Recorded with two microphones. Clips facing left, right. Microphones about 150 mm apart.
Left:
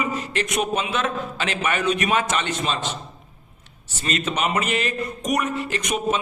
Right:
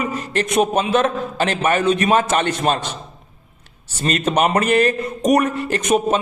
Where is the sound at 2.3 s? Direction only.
50° right (ahead or behind).